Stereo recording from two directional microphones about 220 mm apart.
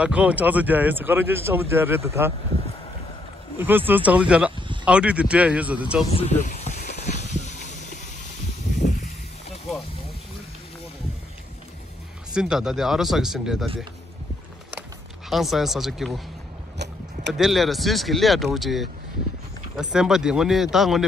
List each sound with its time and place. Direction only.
0.0 s speech: 5° right (ahead or behind)
3.5 s speech: 10° right (ahead or behind)
6.1 s snake: 30° left (ahead or behind)
12.4 s speech: centre (ahead or behind)
14.8 s music: centre (ahead or behind)
16.7 s a sound: 50° right (ahead or behind)
17.3 s speech: centre (ahead or behind)